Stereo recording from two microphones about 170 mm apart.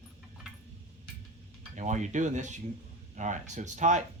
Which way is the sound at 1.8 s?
45° right (ahead or behind).